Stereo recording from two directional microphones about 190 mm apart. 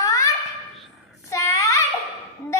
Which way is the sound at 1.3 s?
15° left (ahead or behind).